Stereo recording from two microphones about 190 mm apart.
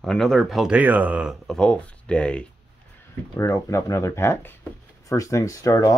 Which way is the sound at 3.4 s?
15° left (ahead or behind).